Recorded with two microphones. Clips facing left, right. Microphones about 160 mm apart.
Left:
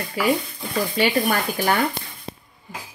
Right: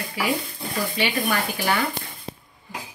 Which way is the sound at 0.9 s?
45° left (ahead or behind).